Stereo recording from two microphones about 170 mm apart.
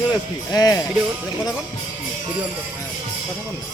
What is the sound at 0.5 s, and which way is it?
Speech, 20° left (ahead or behind).